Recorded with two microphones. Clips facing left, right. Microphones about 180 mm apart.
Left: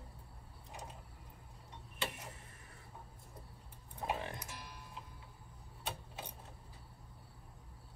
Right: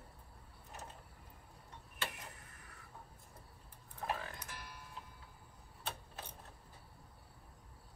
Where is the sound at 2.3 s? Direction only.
25° left (ahead or behind).